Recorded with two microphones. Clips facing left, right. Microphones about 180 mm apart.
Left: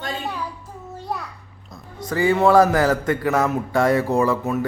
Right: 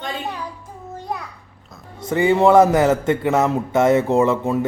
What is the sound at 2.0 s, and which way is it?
Speech, 25° right (ahead or behind).